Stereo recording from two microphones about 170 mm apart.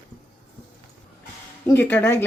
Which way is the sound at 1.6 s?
15° left (ahead or behind).